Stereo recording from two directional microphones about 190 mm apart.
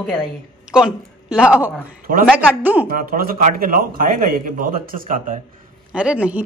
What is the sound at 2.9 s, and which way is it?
A man's voice, 50° right (ahead or behind).